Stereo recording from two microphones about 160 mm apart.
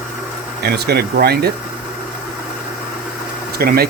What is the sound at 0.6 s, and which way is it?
Speech, 90° right.